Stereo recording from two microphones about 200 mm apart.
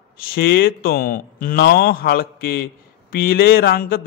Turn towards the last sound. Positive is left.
turn(degrees=50)  # may be behind; listen again after turning